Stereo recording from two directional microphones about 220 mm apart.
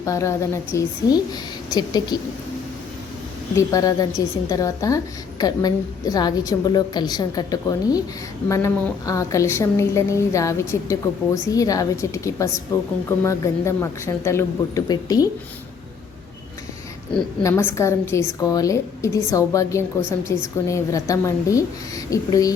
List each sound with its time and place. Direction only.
0.0 s a woman's voice: 15° left (ahead or behind)
3.5 s a woman's voice: 15° left (ahead or behind)
17.4 s a woman's voice: 10° left (ahead or behind)